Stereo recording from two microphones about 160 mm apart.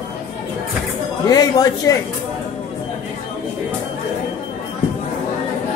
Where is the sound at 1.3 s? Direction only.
25° left (ahead or behind).